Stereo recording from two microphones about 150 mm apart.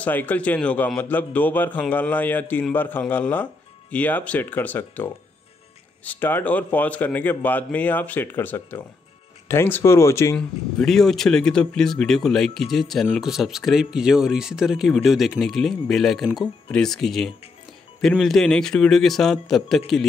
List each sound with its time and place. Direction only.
0.0 s a man's voice: 10° left (ahead or behind)
10.3 s speech: 5° left (ahead or behind)